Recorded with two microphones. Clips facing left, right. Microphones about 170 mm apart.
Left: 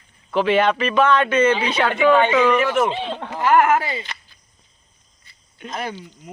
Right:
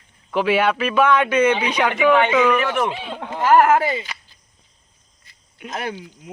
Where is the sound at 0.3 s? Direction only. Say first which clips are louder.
Left 1 dB; 10° right (ahead or behind).